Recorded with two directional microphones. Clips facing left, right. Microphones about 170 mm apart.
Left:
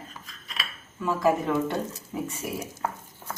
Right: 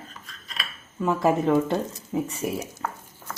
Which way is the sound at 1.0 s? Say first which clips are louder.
Right 2 dB; 25° right (ahead or behind).